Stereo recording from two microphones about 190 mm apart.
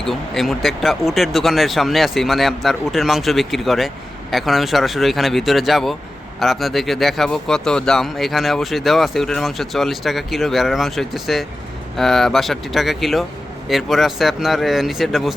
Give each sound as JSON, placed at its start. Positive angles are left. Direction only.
{"t": 0.0, "sound": "speech", "side_deg": 0}